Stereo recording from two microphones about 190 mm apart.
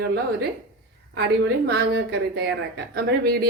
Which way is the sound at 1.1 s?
60° right (ahead or behind).